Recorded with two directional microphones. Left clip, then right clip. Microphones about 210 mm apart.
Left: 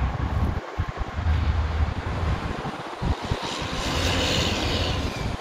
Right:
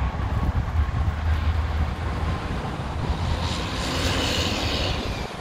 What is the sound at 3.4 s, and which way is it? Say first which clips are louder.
Vehicle: right 1 dB; 40° left (ahead or behind).